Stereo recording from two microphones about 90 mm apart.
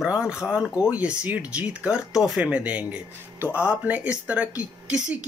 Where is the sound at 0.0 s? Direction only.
10° right (ahead or behind).